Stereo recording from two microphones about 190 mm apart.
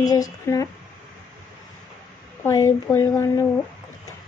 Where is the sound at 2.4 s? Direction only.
15° left (ahead or behind).